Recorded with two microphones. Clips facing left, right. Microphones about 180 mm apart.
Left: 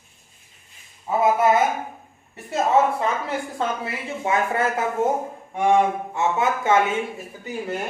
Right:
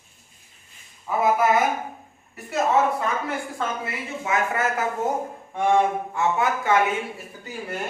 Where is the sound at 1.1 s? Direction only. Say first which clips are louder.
Left 2 dB; 30° left (ahead or behind).